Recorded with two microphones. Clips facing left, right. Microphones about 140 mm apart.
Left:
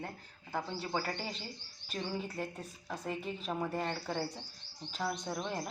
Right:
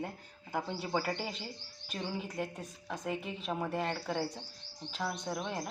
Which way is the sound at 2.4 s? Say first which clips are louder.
Right 2 dB; centre (ahead or behind).